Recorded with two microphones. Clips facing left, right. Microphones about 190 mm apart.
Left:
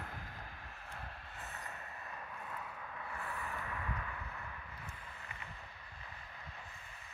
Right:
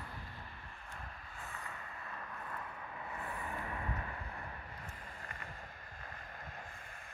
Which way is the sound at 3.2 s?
25° right (ahead or behind).